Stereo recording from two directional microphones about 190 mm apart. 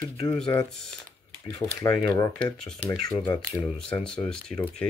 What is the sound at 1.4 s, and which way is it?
Speech, 10° left (ahead or behind).